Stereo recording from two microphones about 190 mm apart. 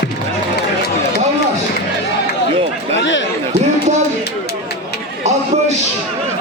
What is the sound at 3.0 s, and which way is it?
Chatter, 70° left (ahead or behind).